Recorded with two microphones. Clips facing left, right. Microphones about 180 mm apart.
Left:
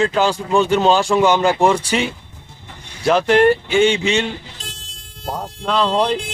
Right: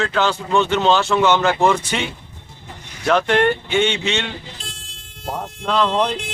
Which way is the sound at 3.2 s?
30° left (ahead or behind).